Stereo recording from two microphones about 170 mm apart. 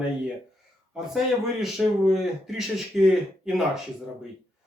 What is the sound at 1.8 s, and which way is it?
Speech, centre (ahead or behind).